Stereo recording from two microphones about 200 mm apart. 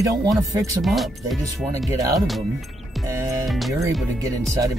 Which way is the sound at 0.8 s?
Centre (ahead or behind).